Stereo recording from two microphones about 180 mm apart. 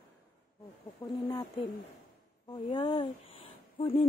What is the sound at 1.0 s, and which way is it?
Speech, 15° left (ahead or behind).